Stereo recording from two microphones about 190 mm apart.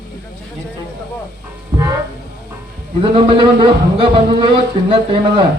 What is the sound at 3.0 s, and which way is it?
A man's voice, 25° right (ahead or behind).